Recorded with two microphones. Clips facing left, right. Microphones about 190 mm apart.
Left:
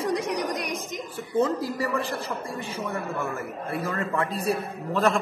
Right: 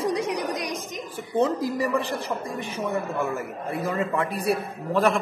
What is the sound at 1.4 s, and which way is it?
A man's voice, 20° right (ahead or behind).